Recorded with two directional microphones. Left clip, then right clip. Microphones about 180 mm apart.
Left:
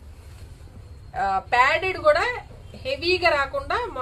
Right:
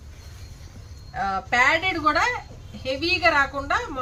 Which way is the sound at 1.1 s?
40° left (ahead or behind).